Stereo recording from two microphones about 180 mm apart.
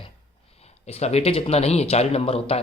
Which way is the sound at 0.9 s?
35° left (ahead or behind).